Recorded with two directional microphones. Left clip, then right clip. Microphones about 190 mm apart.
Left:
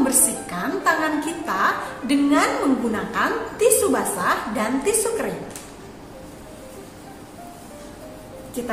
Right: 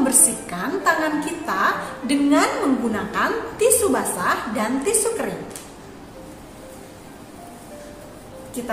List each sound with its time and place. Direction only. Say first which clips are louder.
0.0 s a woman's voice: right 1 dB; 10° right (ahead or behind)